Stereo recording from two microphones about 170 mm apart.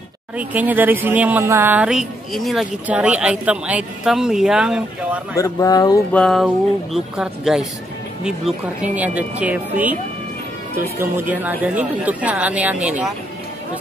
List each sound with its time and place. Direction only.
0.4 s speech: 10° right (ahead or behind)
5.4 s speech: 20° left (ahead or behind)
6.1 s speech: centre (ahead or behind)
11.0 s speech: 10° right (ahead or behind)